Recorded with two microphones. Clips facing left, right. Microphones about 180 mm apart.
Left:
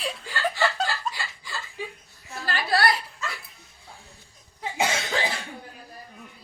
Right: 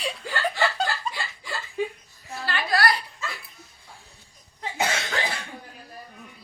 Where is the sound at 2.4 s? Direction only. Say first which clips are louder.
Left 1 dB; 40° left (ahead or behind).